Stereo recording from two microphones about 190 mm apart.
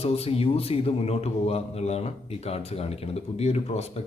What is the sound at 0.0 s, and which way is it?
Speech, 30° left (ahead or behind).